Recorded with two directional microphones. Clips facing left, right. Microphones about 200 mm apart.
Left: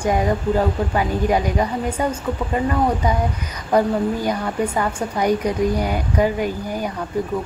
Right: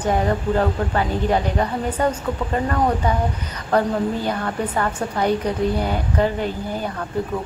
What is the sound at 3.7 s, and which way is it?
Speech, 10° left (ahead or behind).